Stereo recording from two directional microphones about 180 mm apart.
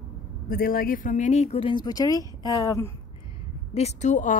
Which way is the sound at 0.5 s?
55° left (ahead or behind).